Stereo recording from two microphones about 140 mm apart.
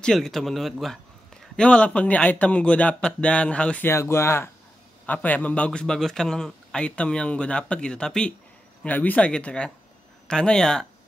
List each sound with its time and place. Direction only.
0.0 s a man's voice: centre (ahead or behind)